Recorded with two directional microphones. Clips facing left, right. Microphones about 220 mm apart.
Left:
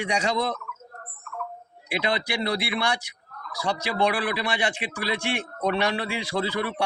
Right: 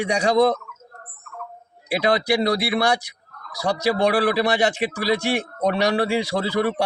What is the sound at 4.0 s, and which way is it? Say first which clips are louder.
A man's voice: right 4 dB; 40° right (ahead or behind).